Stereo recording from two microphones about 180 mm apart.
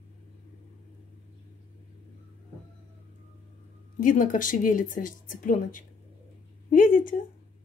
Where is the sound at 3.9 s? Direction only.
50° left (ahead or behind).